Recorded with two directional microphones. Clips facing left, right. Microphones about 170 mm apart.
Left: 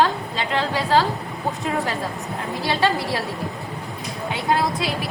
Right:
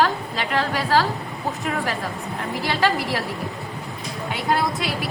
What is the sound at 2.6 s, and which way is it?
Speech, 25° left (ahead or behind).